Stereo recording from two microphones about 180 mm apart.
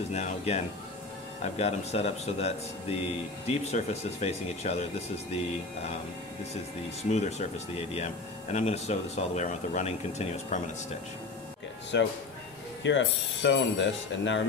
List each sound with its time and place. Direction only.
0.1 s speech: 40° left (ahead or behind)
6.5 s speech: 35° left (ahead or behind)
11.9 s speech: 90° left